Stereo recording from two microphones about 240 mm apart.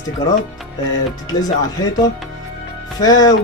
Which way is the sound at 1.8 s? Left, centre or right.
Centre.